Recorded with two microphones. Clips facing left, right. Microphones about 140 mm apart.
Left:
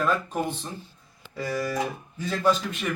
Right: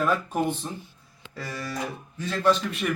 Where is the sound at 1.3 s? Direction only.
15° left (ahead or behind).